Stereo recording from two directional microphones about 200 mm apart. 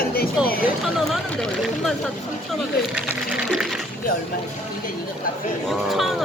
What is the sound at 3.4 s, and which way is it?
Speech, centre (ahead or behind).